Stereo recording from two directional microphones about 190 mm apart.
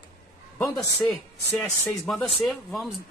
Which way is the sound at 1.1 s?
5° left (ahead or behind).